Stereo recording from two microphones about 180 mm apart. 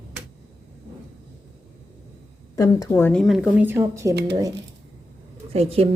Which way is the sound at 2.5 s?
20° left (ahead or behind).